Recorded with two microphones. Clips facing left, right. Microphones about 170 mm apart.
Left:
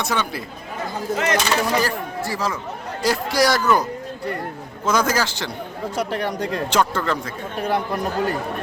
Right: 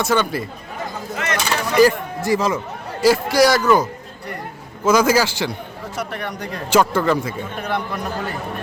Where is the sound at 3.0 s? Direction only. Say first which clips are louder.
Right 5 dB; centre (ahead or behind).